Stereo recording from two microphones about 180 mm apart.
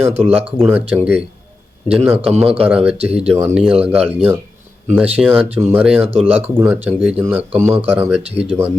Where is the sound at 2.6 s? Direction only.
10° right (ahead or behind).